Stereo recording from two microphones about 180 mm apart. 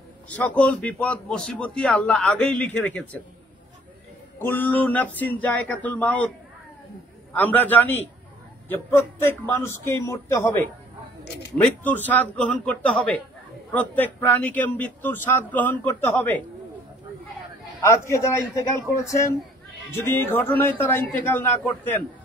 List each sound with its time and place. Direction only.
0.3 s a man's voice: 5° left (ahead or behind)
4.4 s a man's voice: 10° left (ahead or behind)
7.3 s a man's voice: 10° left (ahead or behind)
9.8 s a man's voice: 15° left (ahead or behind)
17.8 s a man's voice: 15° left (ahead or behind)